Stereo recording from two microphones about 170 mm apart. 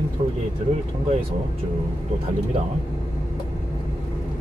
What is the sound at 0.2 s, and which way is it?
Speech, 35° right (ahead or behind).